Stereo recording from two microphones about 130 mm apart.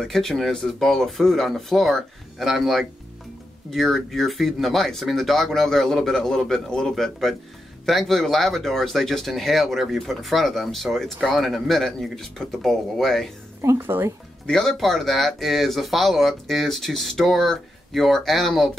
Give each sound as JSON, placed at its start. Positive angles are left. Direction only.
{"t": 0.0, "sound": "speech", "side_deg": 5}
{"t": 13.6, "sound": "speech", "side_deg": -20}
{"t": 14.4, "sound": "speech", "side_deg": 5}